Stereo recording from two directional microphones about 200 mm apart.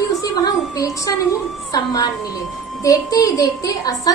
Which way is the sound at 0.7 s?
15° left (ahead or behind).